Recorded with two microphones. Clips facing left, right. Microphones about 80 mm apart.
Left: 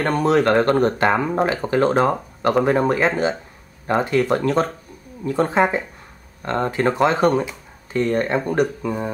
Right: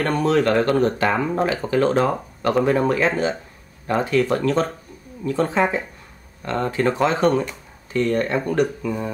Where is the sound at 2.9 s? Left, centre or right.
Centre.